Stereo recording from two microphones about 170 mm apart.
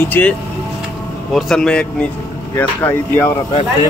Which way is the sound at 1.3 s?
Centre (ahead or behind).